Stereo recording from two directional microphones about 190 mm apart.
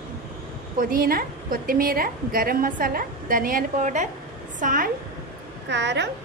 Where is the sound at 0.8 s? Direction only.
45° right (ahead or behind).